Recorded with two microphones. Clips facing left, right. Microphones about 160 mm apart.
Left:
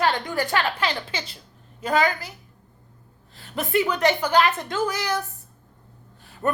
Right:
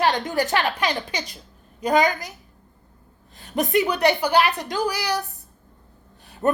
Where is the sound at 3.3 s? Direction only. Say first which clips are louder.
Right 3 dB; 20° right (ahead or behind).